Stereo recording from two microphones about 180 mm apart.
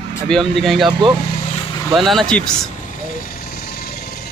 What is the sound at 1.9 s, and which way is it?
Speech, centre (ahead or behind).